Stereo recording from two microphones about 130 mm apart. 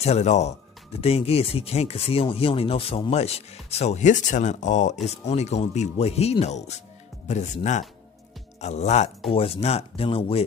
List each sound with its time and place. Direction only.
0.0 s speech: 60° left (ahead or behind)
5.0 s speech: 55° left (ahead or behind)
9.3 s speech: 45° left (ahead or behind)